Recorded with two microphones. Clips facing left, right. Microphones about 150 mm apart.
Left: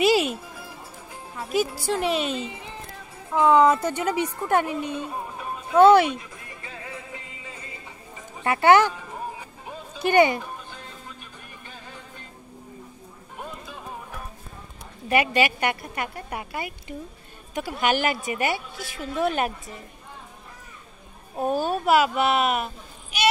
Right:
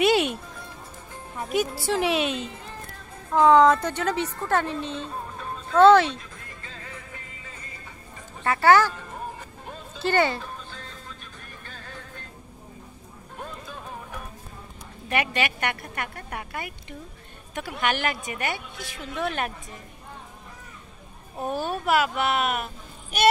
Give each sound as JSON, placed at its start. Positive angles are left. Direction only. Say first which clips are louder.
{"t": 0.0, "sound": "music", "louder": "left 1 dB", "side_deg": 0}
{"t": 1.5, "sound": "speech", "louder": "left 1 dB", "side_deg": 0}
{"t": 3.3, "sound": "a sound", "louder": "right 1 dB", "side_deg": 10}
{"t": 8.5, "sound": "speech", "louder": "left 1 dB", "side_deg": 20}
{"t": 8.9, "sound": "music", "louder": "left 1 dB", "side_deg": 5}
{"t": 13.4, "sound": "music", "louder": "left 1 dB", "side_deg": 5}
{"t": 15.0, "sound": "a woman's voice", "louder": "left 5 dB", "side_deg": 5}
{"t": 21.8, "sound": "speech", "louder": "left 3 dB", "side_deg": 5}